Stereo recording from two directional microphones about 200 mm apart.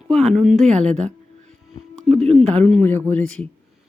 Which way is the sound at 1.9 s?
Centre (ahead or behind).